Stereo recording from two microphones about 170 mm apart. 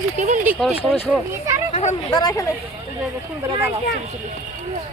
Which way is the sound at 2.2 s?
20° left (ahead or behind).